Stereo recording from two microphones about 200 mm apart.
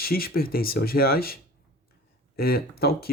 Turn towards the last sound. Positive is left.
turn(degrees=50)  # may be behind; listen again after turning